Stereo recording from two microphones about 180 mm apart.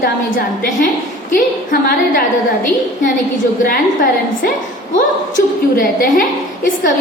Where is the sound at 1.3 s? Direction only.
45° left (ahead or behind).